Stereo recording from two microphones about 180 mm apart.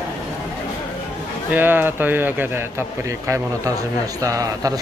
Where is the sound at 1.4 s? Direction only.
10° right (ahead or behind).